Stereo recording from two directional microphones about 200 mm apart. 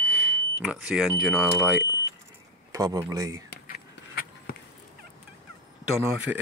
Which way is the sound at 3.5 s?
50° left (ahead or behind).